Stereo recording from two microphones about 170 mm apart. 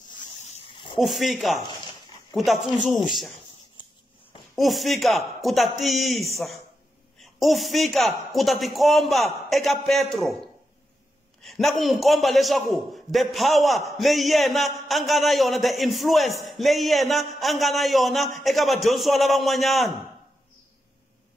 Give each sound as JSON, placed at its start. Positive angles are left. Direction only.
{"t": 0.4, "sound": "a sound", "side_deg": 35}
{"t": 0.9, "sound": "a man's voice", "side_deg": 0}
{"t": 4.6, "sound": "a man's voice", "side_deg": 0}